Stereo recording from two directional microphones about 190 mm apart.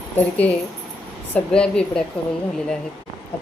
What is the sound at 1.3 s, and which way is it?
Speech, 5° left (ahead or behind).